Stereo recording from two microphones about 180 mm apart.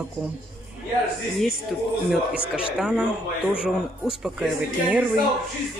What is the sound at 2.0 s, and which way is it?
Speech, 5° right (ahead or behind).